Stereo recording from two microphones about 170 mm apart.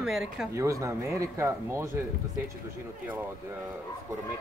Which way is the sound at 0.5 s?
15° right (ahead or behind).